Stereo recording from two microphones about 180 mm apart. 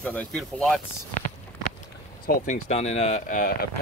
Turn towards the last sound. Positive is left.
turn(degrees=50)  # may be behind; listen again after turning